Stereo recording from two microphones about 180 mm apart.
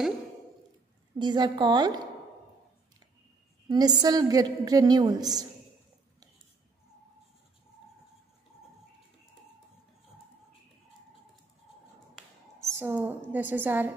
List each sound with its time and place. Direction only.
1.1 s a woman's voice: 25° right (ahead or behind)
3.6 s a woman's voice: 20° right (ahead or behind)
12.7 s a woman's voice: 10° right (ahead or behind)